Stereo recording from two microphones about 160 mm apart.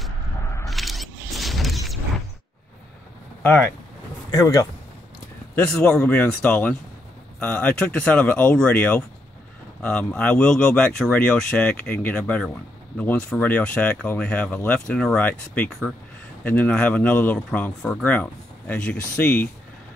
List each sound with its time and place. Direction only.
0.7 s a sound: centre (ahead or behind)
3.4 s speech: 5° left (ahead or behind)
4.3 s speech: 20° left (ahead or behind)
5.6 s speech: 5° left (ahead or behind)